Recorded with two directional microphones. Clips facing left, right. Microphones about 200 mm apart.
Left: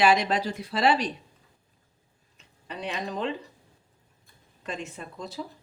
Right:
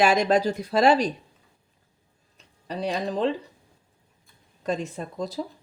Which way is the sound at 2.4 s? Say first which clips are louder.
Right 7 dB; 35° right (ahead or behind).